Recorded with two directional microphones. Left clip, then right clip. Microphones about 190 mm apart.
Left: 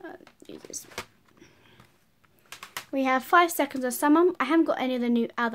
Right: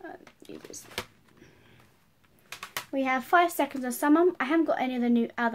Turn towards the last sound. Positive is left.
turn(degrees=50)  # may be behind; listen again after turning